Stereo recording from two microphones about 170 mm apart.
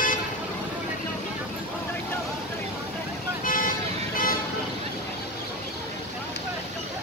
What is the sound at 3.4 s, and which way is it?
Vehicle, 55° left (ahead or behind).